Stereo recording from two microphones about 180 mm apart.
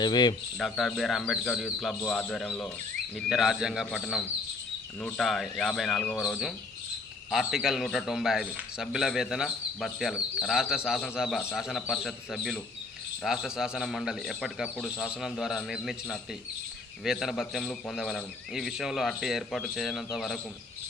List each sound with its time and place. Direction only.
0.0 s speech: 25° left (ahead or behind)
0.6 s speech: centre (ahead or behind)